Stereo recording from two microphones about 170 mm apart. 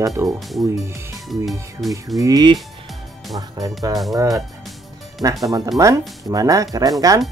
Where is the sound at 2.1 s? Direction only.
20° right (ahead or behind).